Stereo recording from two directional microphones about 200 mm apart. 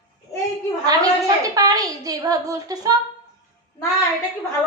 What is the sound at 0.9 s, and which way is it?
A woman's voice, 20° right (ahead or behind).